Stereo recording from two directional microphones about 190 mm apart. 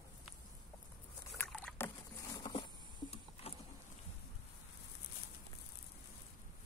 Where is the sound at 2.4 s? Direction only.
25° left (ahead or behind).